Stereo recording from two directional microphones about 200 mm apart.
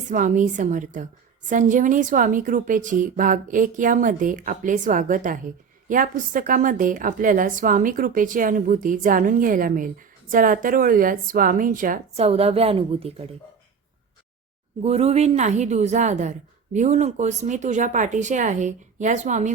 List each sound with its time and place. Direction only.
0.1 s a woman's voice: 40° right (ahead or behind)
14.8 s a woman's voice: 30° right (ahead or behind)